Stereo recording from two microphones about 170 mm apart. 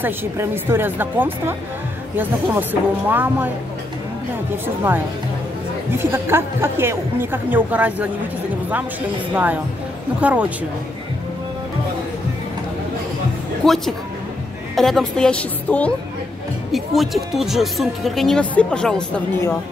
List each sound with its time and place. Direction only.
0.0 s speech: 15° right (ahead or behind)
5.9 s speech: 15° right (ahead or behind)
9.3 s speech: 10° right (ahead or behind)
13.6 s speech: 5° left (ahead or behind)